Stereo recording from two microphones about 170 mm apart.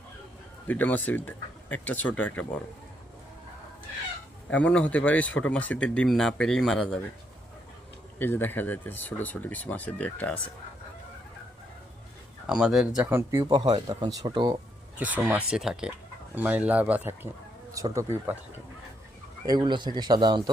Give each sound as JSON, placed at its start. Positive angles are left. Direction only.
{"t": 0.7, "sound": "speech", "side_deg": 10}
{"t": 4.5, "sound": "speech", "side_deg": 5}
{"t": 8.2, "sound": "speech", "side_deg": 10}
{"t": 12.5, "sound": "speech", "side_deg": -5}
{"t": 13.4, "sound": "speech", "side_deg": -25}
{"t": 14.9, "sound": "speech", "side_deg": -10}
{"t": 19.5, "sound": "speech", "side_deg": -25}